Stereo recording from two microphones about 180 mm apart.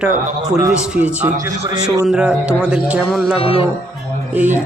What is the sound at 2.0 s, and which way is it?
Speech, 5° right (ahead or behind).